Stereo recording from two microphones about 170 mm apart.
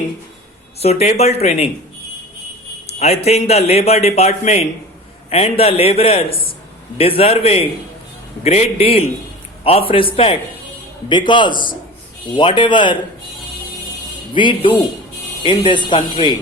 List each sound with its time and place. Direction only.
0.8 s speech: 40° left (ahead or behind)
3.2 s speech: 40° left (ahead or behind)
14.3 s speech: 30° left (ahead or behind)